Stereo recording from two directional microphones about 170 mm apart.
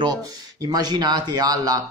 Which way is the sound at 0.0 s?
25° right (ahead or behind).